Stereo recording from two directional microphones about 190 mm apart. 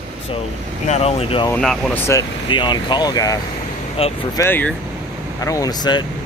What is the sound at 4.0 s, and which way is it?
Speech, 30° left (ahead or behind).